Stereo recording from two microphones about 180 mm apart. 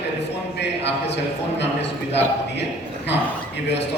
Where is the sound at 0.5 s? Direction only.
75° left (ahead or behind).